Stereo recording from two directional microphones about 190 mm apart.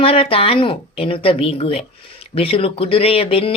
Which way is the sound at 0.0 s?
30° left (ahead or behind).